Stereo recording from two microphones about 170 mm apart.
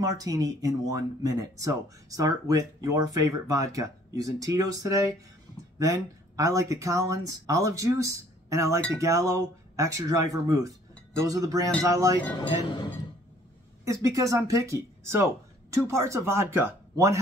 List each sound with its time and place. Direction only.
0.0 s speech: 20° right (ahead or behind)
13.8 s speech: 20° right (ahead or behind)